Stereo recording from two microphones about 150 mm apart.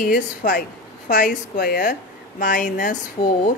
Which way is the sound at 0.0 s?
65° left (ahead or behind).